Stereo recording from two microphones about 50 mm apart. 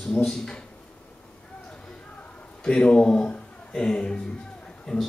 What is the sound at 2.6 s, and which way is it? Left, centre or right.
Speech, centre.